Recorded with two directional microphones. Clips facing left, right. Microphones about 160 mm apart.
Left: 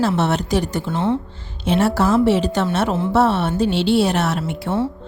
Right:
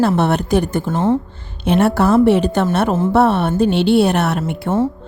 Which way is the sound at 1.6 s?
60° right (ahead or behind).